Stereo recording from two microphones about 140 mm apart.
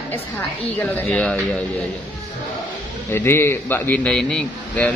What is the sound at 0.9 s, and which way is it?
Speech, 10° left (ahead or behind).